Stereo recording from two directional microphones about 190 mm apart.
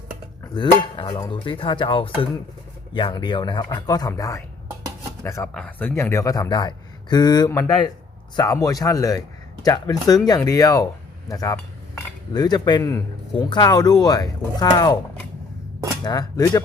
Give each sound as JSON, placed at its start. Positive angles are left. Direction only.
{"t": 0.4, "sound": "speech", "side_deg": 25}
{"t": 11.3, "sound": "cutlery", "side_deg": 15}
{"t": 16.0, "sound": "speech", "side_deg": 15}